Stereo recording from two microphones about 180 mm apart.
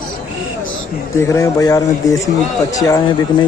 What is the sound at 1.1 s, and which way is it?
A man's voice, 15° left (ahead or behind).